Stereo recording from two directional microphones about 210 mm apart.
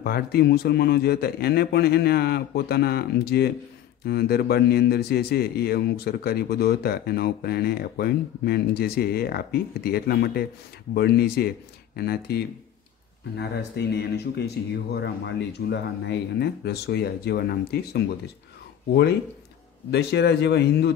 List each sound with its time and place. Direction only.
0.0 s a man's voice: 50° left (ahead or behind)
19.9 s a man's voice: 50° left (ahead or behind)